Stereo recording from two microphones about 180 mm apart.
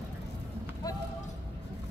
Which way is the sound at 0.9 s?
20° left (ahead or behind).